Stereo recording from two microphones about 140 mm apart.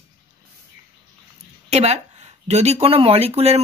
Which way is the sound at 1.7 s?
50° right (ahead or behind).